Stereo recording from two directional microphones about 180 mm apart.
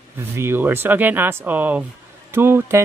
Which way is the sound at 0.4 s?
10° right (ahead or behind).